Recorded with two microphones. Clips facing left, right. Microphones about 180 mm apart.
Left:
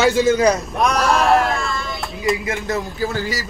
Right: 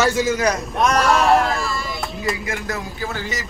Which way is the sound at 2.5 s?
25° left (ahead or behind).